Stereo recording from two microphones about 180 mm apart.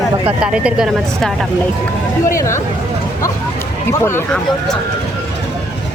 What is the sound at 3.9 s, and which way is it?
Speech, 15° left (ahead or behind).